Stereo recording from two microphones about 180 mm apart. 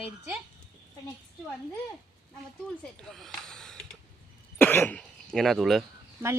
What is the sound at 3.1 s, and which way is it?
Speech, 5° left (ahead or behind).